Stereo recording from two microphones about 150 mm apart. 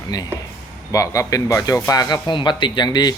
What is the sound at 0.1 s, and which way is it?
A man's voice, 25° left (ahead or behind).